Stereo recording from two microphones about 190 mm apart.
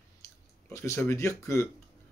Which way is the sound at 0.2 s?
15° left (ahead or behind).